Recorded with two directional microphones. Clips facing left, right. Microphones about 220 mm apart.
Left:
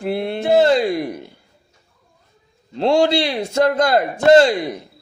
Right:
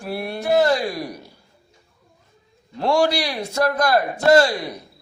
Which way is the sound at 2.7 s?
25° left (ahead or behind).